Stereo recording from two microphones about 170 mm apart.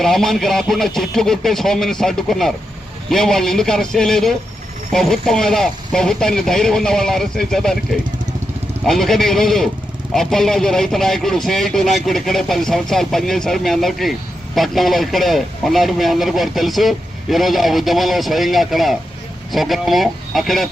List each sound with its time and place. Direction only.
0.0 s speech: centre (ahead or behind)
8.9 s speech: centre (ahead or behind)